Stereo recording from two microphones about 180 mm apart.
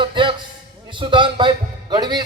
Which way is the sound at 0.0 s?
25° right (ahead or behind).